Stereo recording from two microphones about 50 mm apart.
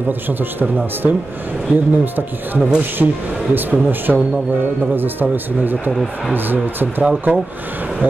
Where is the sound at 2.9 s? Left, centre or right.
Right.